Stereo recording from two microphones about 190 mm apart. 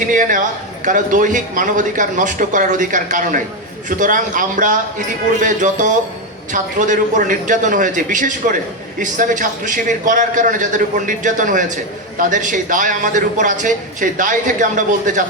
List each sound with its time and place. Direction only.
0.1 s a man's voice: 45° right (ahead or behind)